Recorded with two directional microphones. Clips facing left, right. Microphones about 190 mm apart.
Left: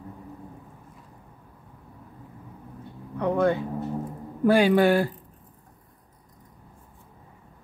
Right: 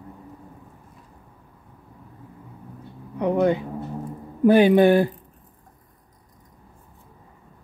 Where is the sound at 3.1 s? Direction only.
15° right (ahead or behind).